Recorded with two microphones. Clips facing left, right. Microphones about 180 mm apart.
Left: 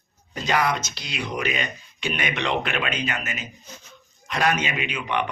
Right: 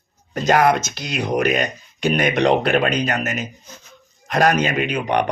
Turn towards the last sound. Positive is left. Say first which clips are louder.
# right 7 dB
turn(degrees=-45)  # may be behind; listen again after turning